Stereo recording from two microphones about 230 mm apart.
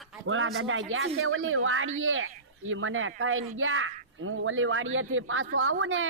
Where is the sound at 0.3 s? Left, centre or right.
Right.